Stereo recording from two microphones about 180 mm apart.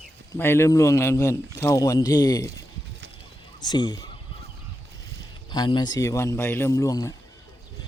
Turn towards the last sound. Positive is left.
turn(degrees=20)  # may be behind; listen again after turning